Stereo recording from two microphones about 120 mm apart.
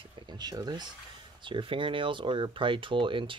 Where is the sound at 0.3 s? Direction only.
35° right (ahead or behind).